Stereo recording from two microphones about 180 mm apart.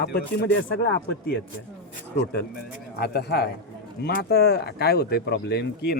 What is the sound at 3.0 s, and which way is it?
Speech, 60° left (ahead or behind).